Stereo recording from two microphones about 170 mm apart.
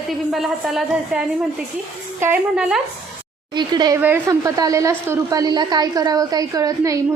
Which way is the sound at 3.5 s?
25° right (ahead or behind).